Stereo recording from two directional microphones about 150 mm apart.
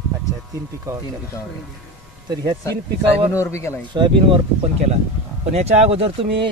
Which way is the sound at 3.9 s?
30° right (ahead or behind).